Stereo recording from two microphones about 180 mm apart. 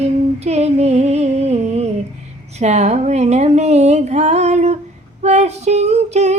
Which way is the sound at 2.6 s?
40° right (ahead or behind).